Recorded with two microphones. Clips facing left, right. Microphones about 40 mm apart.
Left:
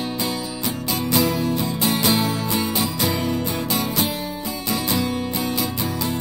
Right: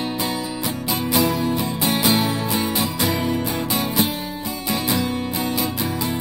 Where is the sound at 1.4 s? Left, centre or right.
Right.